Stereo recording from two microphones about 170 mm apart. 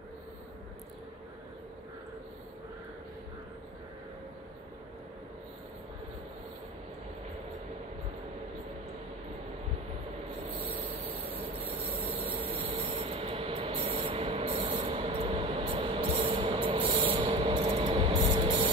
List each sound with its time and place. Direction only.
12.0 s train: 45° right (ahead or behind)
14.0 s ratchet: 35° right (ahead or behind)
14.9 s train: 35° right (ahead or behind)